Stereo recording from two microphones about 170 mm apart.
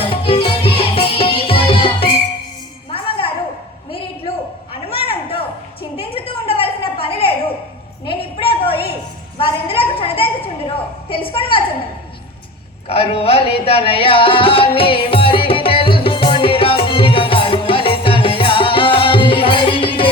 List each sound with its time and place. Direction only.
0.0 s music: 35° left (ahead or behind)
4.7 s a sound: 35° left (ahead or behind)
12.9 s music: 35° left (ahead or behind)